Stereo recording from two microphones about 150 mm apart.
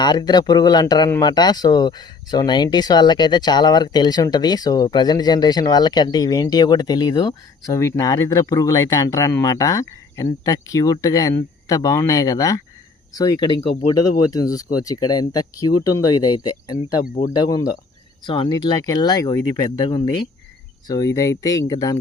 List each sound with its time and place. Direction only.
0.0 s speech: 30° left (ahead or behind)